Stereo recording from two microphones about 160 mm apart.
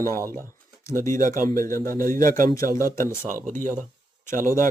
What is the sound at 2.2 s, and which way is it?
Speech, 60° right (ahead or behind).